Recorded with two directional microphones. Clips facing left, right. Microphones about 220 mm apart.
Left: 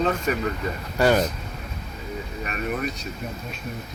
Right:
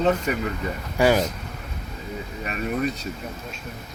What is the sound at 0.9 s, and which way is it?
Speech, 10° right (ahead or behind).